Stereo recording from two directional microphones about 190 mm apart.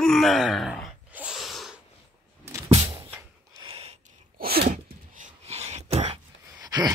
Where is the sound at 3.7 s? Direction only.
30° right (ahead or behind).